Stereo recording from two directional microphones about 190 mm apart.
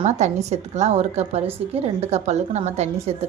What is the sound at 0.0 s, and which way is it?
A woman's voice, 35° right (ahead or behind).